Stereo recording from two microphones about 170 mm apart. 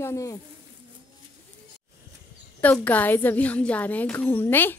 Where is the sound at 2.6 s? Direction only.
10° left (ahead or behind).